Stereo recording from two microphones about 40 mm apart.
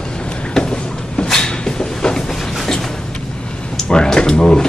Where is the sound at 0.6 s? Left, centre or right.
Left.